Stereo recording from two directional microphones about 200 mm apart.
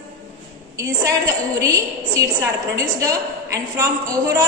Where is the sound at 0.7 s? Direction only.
15° right (ahead or behind).